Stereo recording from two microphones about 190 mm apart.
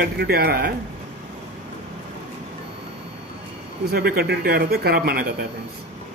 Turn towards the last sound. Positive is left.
turn(degrees=-55)  # may be behind; listen again after turning